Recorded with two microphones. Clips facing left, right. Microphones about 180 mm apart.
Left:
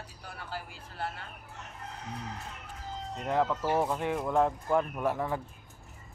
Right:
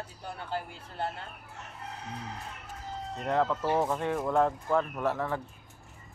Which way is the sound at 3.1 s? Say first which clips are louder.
Right 1 dB; 10° left (ahead or behind).